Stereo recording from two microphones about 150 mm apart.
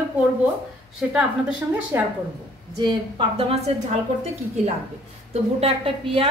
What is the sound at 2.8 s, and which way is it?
A woman's voice, 30° right (ahead or behind).